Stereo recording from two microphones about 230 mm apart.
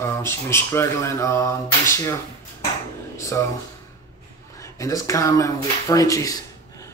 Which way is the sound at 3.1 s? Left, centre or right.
Centre.